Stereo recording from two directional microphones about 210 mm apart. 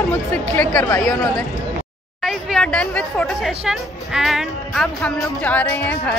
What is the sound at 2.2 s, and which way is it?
Speech, centre (ahead or behind).